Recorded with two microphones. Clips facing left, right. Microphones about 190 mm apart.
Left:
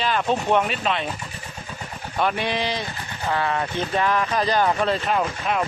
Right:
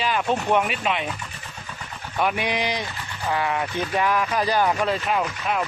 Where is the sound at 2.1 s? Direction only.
10° right (ahead or behind).